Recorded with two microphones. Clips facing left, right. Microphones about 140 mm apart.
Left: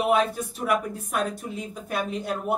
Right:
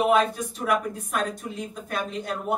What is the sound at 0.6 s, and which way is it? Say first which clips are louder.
A woman's voice: even; 5° left (ahead or behind).